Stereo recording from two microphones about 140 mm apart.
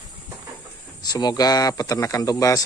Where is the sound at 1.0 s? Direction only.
30° left (ahead or behind).